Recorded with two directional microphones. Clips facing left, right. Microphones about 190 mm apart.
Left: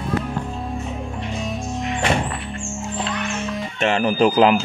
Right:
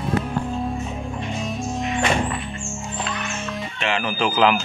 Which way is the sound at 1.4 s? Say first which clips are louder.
Even; centre (ahead or behind).